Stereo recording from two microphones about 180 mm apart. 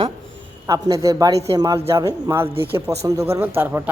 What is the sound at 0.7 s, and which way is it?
A man's voice, 20° right (ahead or behind).